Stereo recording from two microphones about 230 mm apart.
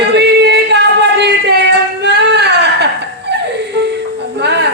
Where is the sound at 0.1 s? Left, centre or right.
Right.